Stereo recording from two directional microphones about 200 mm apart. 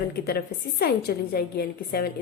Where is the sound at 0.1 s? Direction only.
50° left (ahead or behind).